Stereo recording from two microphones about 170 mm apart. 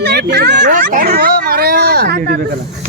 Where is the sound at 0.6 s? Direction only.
50° right (ahead or behind); by 2.2 s 70° right (ahead or behind).